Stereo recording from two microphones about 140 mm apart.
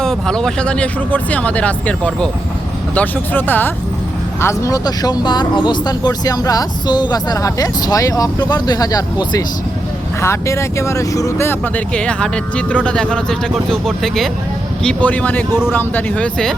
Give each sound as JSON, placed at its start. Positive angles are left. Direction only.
{"t": 0.0, "sound": "speech", "side_deg": 5}